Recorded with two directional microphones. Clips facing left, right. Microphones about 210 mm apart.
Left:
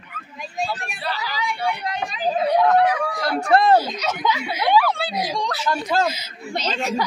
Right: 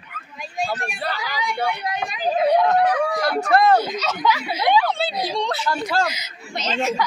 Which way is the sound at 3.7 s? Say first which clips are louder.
Left 1 dB; 15° left (ahead or behind).